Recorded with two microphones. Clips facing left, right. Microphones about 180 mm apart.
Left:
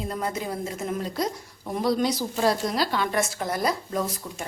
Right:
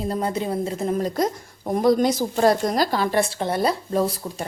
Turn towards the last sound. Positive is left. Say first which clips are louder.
# right 5 dB
turn(degrees=-30)  # may be behind; listen again after turning